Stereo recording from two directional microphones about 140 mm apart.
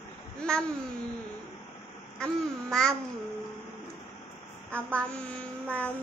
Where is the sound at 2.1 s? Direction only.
5° left (ahead or behind).